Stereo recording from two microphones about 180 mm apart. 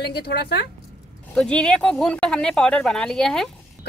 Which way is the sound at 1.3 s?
5° left (ahead or behind).